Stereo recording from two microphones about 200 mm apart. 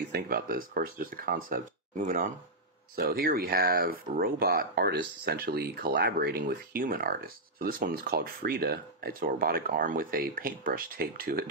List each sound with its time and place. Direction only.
0.1 s speech: 45° right (ahead or behind)